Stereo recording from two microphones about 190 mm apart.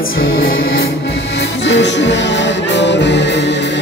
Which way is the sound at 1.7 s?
70° left (ahead or behind).